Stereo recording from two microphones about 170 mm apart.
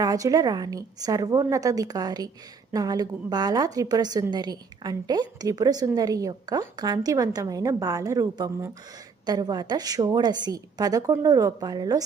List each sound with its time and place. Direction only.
0.0 s a woman's voice: 20° right (ahead or behind)